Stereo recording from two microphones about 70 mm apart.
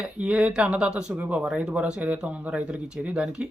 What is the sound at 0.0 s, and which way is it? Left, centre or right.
Speech, centre.